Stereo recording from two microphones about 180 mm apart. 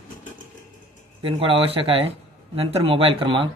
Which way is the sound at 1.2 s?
30° right (ahead or behind).